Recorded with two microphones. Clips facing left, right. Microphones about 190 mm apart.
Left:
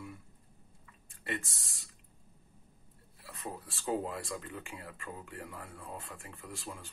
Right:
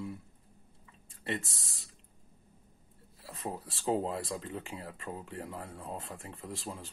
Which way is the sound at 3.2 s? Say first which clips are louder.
Right 4 dB; 35° right (ahead or behind).